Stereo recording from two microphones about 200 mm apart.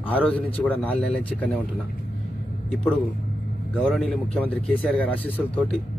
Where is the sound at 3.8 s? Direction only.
5° left (ahead or behind).